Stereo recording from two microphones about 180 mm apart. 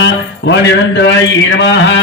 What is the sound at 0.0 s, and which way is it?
A man's voice, 75° left (ahead or behind).